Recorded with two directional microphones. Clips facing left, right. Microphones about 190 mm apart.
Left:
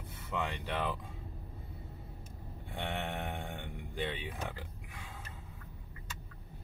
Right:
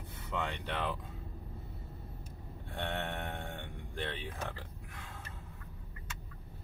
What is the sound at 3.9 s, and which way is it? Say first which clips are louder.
Speech: left 2 dB; 15° left (ahead or behind).